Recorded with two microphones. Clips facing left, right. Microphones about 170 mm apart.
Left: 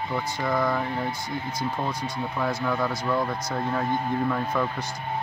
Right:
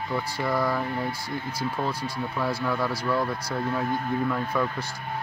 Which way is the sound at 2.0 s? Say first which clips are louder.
Left 1 dB; 5° right (ahead or behind).